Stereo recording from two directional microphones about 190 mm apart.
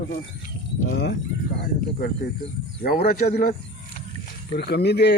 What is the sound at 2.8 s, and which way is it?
Speech, 50° left (ahead or behind).